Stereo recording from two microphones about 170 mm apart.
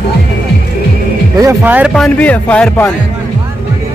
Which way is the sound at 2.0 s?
10° left (ahead or behind).